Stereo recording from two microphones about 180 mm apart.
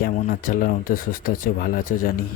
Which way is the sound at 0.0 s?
50° left (ahead or behind).